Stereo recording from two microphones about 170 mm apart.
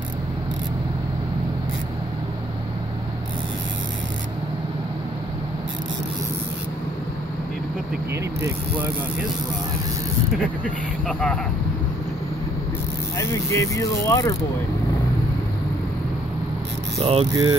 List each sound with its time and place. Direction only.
8.1 s mechanisms: 15° right (ahead or behind)
10.6 s speech: 5° left (ahead or behind)
13.2 s speech: 15° left (ahead or behind)
17.0 s speech: 35° right (ahead or behind)
17.3 s speech: 25° right (ahead or behind)